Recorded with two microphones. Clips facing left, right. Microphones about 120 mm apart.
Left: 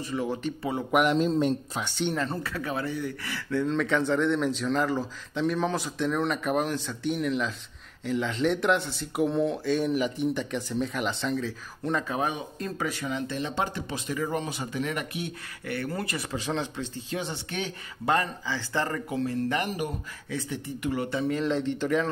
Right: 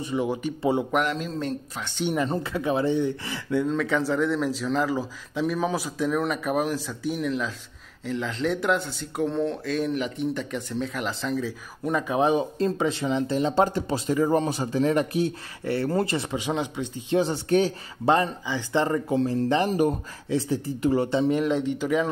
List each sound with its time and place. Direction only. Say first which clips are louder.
0.0 s speech: right 3 dB; 20° right (ahead or behind)
1.1 s speech: left 6 dB; 25° left (ahead or behind)
2.0 s speech: right 4 dB; 10° right (ahead or behind)
3.5 s speech: right 2 dB; 5° right (ahead or behind)
12.2 s speech: right 8 dB; 30° right (ahead or behind)
16.3 s speech: even; 15° right (ahead or behind)
17.2 s speech: right 14 dB; 40° right (ahead or behind)
18.1 s speech: right 3 dB; 20° right (ahead or behind)
21.4 s speech: right 3 dB; 10° right (ahead or behind)